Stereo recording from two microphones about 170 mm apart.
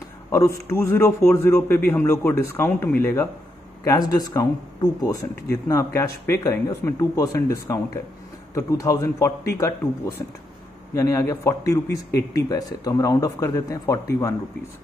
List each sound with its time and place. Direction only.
0.3 s a man's voice: 15° left (ahead or behind)